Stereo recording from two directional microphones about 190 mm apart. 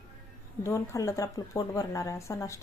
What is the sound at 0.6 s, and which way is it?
Speech, 15° left (ahead or behind).